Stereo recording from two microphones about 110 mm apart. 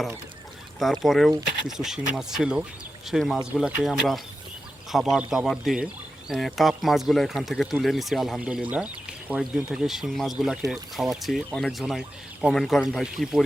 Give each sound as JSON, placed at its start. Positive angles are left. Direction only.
{"t": 0.8, "sound": "speech", "side_deg": 0}
{"t": 4.9, "sound": "speech", "side_deg": 0}